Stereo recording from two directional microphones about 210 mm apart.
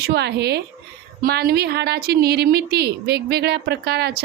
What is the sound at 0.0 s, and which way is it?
A woman's voice, 50° right (ahead or behind).